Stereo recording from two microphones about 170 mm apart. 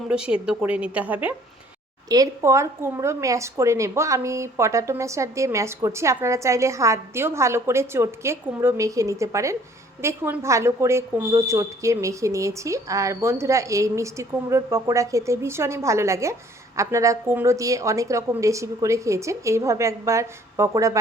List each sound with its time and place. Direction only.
0.1 s speech: 5° right (ahead or behind)
2.0 s speech: 20° right (ahead or behind)